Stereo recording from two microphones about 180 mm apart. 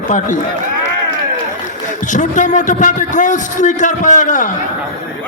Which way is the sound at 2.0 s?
45° left (ahead or behind).